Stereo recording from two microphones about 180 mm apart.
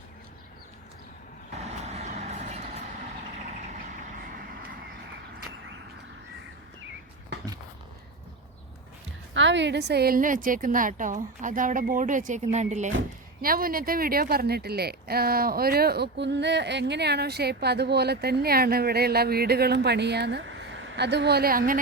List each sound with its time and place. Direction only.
1.6 s vehicle: 40° right (ahead or behind); by 5.0 s 60° right (ahead or behind)
9.3 s a woman's voice: 90° right; by 12.9 s 40° right (ahead or behind)
13.4 s speech: 55° right (ahead or behind)